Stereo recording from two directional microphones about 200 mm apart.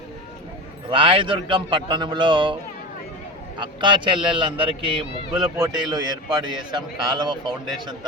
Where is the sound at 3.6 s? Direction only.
25° right (ahead or behind).